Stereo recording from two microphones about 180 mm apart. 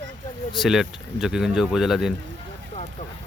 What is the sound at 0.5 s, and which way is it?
Speech, centre (ahead or behind).